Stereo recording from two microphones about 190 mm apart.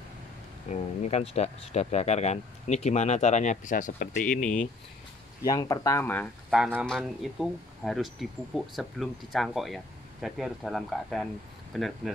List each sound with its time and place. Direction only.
0.7 s speech: 35° left (ahead or behind)
5.4 s speech: 20° left (ahead or behind)
6.5 s speech: 5° right (ahead or behind)